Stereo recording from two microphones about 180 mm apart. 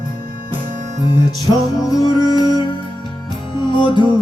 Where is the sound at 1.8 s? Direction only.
20° left (ahead or behind).